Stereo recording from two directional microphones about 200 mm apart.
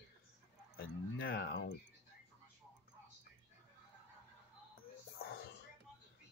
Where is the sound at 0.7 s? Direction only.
50° left (ahead or behind).